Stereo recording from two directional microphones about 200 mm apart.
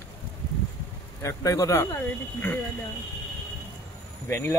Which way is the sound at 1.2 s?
15° left (ahead or behind).